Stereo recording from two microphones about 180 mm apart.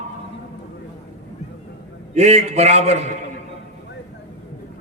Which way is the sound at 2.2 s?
35° right (ahead or behind).